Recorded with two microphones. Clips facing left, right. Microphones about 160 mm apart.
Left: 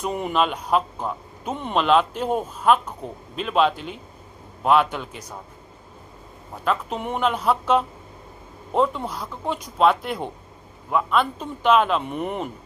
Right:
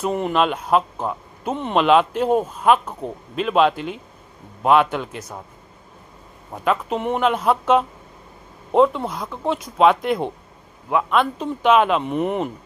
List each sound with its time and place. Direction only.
0.0 s a man's voice: centre (ahead or behind)
6.5 s a man's voice: 5° right (ahead or behind)